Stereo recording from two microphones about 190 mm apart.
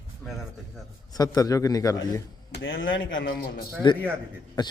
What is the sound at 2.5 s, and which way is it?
Speech, 90° left.